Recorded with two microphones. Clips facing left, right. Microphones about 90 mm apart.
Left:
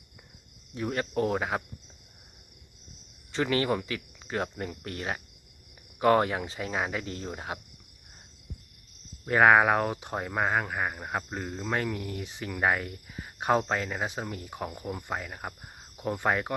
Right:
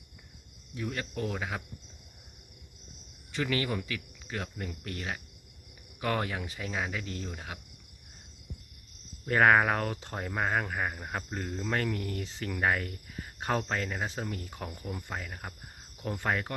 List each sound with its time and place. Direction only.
0.7 s speech: 30° left (ahead or behind)
3.3 s speech: 30° left (ahead or behind)
3.8 s cricket: 30° left (ahead or behind)
4.8 s speech: 30° left (ahead or behind)
9.2 s speech: 15° left (ahead or behind)